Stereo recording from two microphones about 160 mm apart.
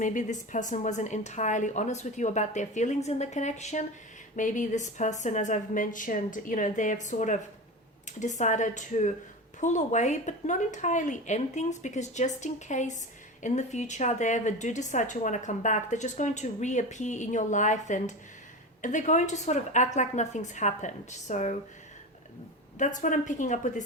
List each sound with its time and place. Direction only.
0.0 s a woman's voice: 50° left (ahead or behind)
22.8 s a woman's voice: 50° left (ahead or behind)